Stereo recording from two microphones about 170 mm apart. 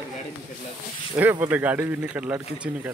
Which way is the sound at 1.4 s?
10° right (ahead or behind).